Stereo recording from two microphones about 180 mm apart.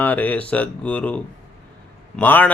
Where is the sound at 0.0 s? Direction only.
10° left (ahead or behind).